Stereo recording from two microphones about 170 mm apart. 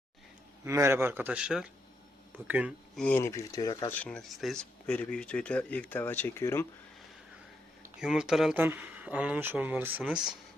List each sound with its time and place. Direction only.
0.6 s speech: 15° right (ahead or behind)
3.0 s speech: 10° left (ahead or behind)
3.8 s speech: 10° left (ahead or behind)
7.9 s speech: 5° right (ahead or behind)